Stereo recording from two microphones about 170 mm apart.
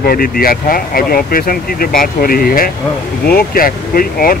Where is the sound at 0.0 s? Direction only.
60° left (ahead or behind).